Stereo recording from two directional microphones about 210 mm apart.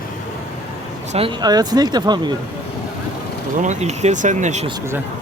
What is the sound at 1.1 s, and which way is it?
Speech, 25° right (ahead or behind).